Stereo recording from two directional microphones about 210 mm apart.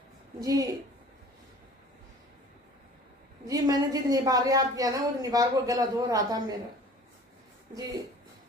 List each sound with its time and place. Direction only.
0.4 s a woman's voice: 15° right (ahead or behind)
3.4 s a woman's voice: 15° right (ahead or behind)